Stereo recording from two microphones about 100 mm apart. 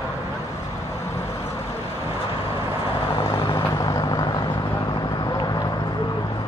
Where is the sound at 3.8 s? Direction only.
35° left (ahead or behind).